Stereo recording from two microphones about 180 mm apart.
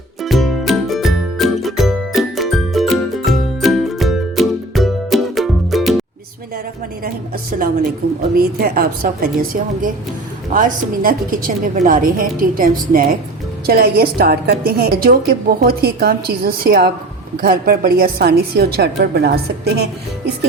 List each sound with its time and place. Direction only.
0.2 s music: centre (ahead or behind)
8.4 s a woman's voice: 55° right (ahead or behind)